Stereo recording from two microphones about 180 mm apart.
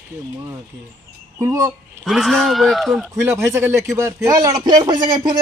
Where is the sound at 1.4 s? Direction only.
15° right (ahead or behind).